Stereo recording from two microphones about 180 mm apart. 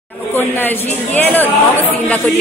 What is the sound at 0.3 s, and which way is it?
A woman's voice, 10° left (ahead or behind).